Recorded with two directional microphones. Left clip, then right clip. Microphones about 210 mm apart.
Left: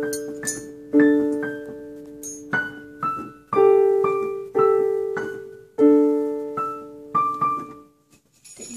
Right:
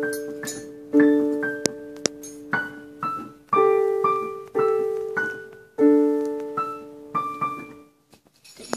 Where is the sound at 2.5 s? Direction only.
10° left (ahead or behind).